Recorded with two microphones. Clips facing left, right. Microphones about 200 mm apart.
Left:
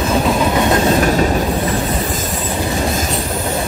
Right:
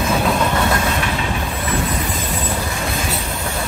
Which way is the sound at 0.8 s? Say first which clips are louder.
Left 8 dB; 40° left (ahead or behind).